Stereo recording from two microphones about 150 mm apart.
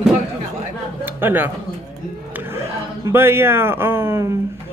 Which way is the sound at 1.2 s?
15° right (ahead or behind).